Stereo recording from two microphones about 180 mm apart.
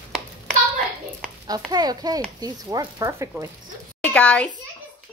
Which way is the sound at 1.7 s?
20° right (ahead or behind).